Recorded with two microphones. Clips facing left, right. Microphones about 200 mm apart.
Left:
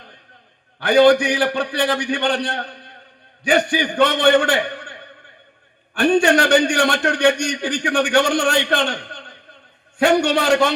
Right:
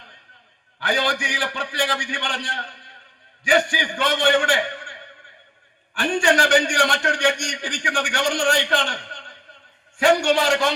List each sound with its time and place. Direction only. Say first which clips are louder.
0.8 s a man's voice: left 12 dB; 60° left (ahead or behind)